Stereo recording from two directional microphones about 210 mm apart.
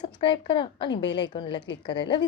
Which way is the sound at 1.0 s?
55° left (ahead or behind).